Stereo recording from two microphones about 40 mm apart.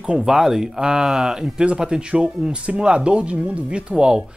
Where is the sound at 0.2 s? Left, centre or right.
Centre.